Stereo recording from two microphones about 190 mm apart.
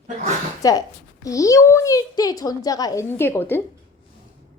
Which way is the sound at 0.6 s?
20° left (ahead or behind).